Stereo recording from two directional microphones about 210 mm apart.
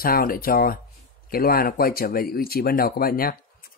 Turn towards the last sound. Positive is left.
turn(degrees=45)  # may be behind; listen again after turning